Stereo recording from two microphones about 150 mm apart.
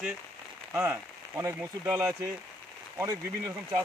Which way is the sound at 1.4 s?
15° right (ahead or behind).